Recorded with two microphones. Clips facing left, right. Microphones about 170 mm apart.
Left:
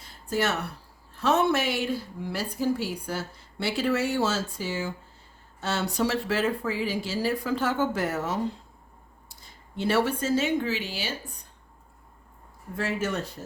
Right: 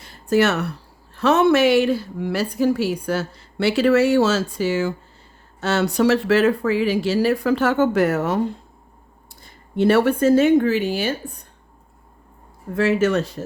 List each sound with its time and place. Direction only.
0.0 s a sound: 75° right (ahead or behind)
1.1 s a woman's voice: 80° right
5.5 s speech: 75° right (ahead or behind); by 11.2 s 55° right (ahead or behind)
12.7 s a woman's voice: 85° right